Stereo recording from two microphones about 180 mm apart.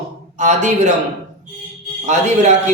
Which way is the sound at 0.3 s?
40° right (ahead or behind).